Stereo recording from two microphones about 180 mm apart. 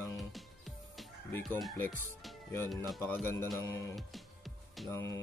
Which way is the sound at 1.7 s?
10° left (ahead or behind).